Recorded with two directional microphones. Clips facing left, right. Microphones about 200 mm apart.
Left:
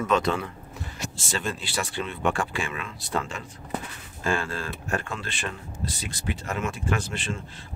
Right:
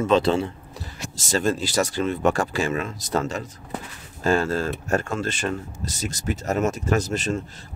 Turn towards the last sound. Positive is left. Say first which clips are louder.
# right 7 dB
turn(degrees=-40)  # may be behind; listen again after turning